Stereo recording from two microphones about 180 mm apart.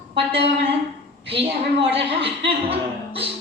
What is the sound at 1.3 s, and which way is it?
A woman's voice, 30° right (ahead or behind).